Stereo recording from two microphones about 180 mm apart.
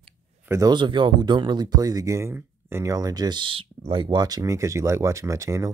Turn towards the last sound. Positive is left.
turn(degrees=-15)  # may be behind; listen again after turning